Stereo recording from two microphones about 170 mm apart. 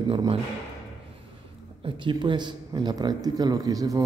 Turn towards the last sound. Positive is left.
turn(degrees=-20)  # may be behind; listen again after turning